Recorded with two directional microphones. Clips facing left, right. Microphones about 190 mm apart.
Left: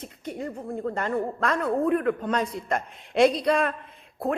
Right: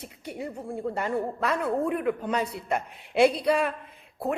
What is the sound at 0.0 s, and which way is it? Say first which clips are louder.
Speech: left 2 dB; 10° right (ahead or behind).